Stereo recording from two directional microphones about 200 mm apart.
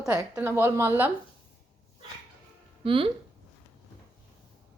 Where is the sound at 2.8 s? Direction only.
25° right (ahead or behind).